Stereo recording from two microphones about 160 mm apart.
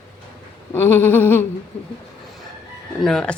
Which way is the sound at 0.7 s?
15° left (ahead or behind).